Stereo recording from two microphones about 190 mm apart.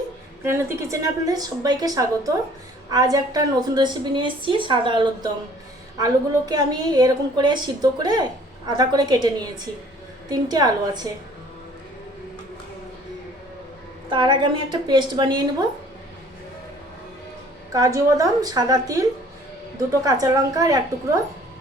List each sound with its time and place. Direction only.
0.4 s a woman's voice: 15° right (ahead or behind)
14.1 s a woman's voice: 25° right (ahead or behind)
17.7 s a woman's voice: 15° right (ahead or behind)
20.1 s a woman's voice: 20° right (ahead or behind)